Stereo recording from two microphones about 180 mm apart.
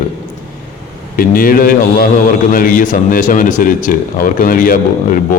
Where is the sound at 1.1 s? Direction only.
55° left (ahead or behind).